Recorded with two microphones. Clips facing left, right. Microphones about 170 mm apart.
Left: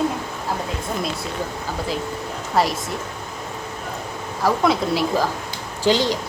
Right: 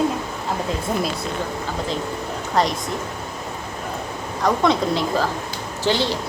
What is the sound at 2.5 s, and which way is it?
Speech, 5° left (ahead or behind).